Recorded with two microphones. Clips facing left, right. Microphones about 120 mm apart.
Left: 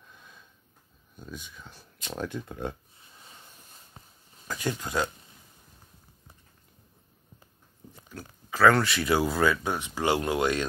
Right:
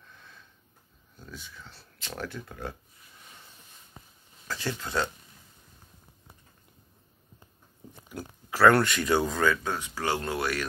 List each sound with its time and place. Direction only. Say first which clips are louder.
0.0 s sniff: even; 15° left (ahead or behind)
1.1 s speech: left 3 dB; 20° left (ahead or behind)
4.5 s speech: left 2 dB; 15° left (ahead or behind)
8.1 s speech: right 2 dB; 5° right (ahead or behind); by 10.6 s 20° left (ahead or behind)